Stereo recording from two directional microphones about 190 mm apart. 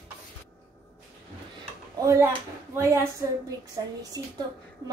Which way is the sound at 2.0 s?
15° right (ahead or behind).